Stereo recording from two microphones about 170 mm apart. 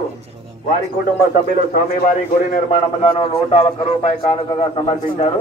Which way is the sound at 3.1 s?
35° left (ahead or behind).